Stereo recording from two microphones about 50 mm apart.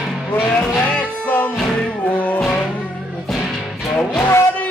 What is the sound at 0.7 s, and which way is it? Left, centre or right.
Music, left.